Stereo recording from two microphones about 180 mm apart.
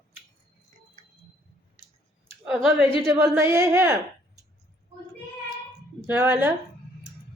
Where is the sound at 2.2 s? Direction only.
5° right (ahead or behind).